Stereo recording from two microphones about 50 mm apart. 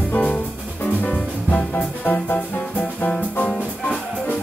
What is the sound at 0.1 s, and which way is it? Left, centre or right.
Music, left.